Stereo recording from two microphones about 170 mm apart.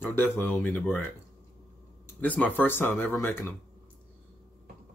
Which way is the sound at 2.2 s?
10° left (ahead or behind).